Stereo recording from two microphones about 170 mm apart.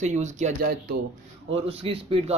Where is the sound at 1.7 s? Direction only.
35° right (ahead or behind).